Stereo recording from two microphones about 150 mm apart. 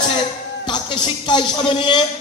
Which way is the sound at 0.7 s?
30° left (ahead or behind).